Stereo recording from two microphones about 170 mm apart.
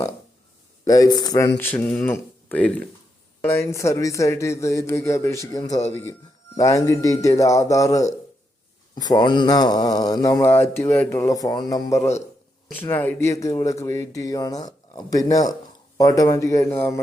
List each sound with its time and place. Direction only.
0.9 s speech: 20° left (ahead or behind)
1.5 s a man's voice: 10° left (ahead or behind)
11.9 s a man's voice: 40° left (ahead or behind)
12.7 s a man's voice: 10° left (ahead or behind)